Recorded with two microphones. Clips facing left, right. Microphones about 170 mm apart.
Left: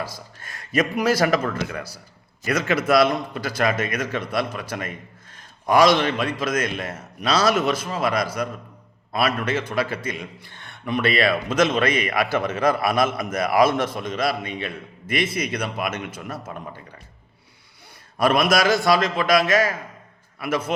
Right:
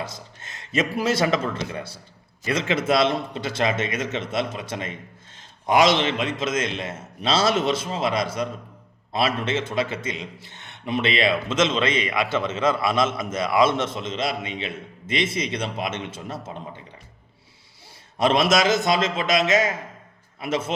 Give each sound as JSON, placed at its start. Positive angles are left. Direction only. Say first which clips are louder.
{"t": 0.0, "sound": "a man's voice", "louder": "left 1 dB", "side_deg": -25}
{"t": 18.2, "sound": "a man's voice", "louder": "even", "side_deg": -25}